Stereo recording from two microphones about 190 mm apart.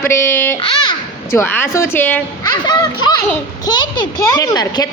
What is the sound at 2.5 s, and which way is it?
A woman's voice, 25° left (ahead or behind).